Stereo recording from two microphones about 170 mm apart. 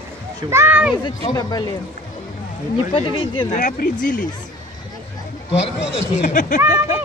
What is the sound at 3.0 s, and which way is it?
Speech, 30° left (ahead or behind).